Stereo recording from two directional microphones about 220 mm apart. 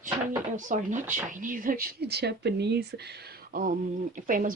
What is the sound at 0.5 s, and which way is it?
Speech, 35° right (ahead or behind).